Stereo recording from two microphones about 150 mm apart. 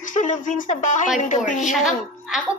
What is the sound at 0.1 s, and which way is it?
Speech, 55° left (ahead or behind).